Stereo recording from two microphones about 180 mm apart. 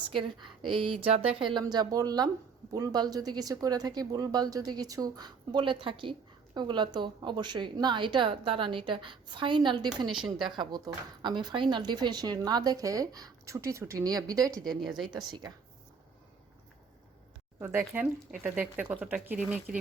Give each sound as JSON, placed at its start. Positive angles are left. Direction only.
{"t": 0.1, "sound": "speech", "side_deg": -30}
{"t": 0.7, "sound": "a sound", "side_deg": -30}
{"t": 1.4, "sound": "speech", "side_deg": -25}
{"t": 10.2, "sound": "speech", "side_deg": 0}
{"t": 10.5, "sound": "speech", "side_deg": -25}
{"t": 14.5, "sound": "speech", "side_deg": 0}
{"t": 17.6, "sound": "speech", "side_deg": -10}